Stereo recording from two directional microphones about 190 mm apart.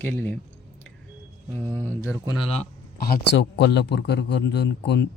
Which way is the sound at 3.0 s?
60° left (ahead or behind).